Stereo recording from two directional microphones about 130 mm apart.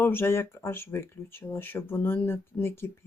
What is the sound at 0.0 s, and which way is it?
Speech, 15° left (ahead or behind).